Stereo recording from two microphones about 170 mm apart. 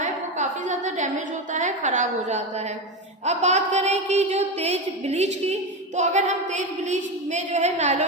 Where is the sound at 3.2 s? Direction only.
40° right (ahead or behind).